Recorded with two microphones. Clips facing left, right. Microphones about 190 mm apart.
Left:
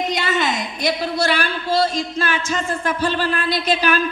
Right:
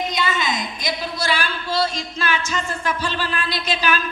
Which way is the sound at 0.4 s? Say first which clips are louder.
Left 4 dB; 65° left (ahead or behind).